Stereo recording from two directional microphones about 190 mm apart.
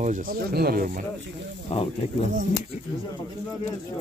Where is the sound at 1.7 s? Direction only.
35° left (ahead or behind).